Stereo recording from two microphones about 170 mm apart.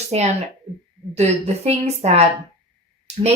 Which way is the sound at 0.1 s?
40° right (ahead or behind).